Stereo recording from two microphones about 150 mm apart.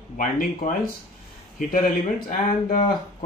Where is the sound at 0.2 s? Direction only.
60° left (ahead or behind).